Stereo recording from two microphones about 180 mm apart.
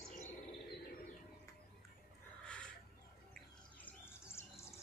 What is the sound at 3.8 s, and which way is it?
Bird, 15° left (ahead or behind).